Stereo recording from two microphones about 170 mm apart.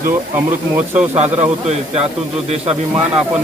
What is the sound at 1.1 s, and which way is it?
Speech, 40° right (ahead or behind).